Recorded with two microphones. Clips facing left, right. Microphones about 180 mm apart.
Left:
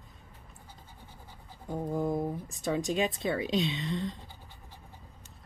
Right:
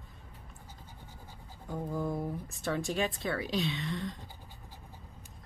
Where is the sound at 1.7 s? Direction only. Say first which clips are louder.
Left 4 dB; 20° left (ahead or behind).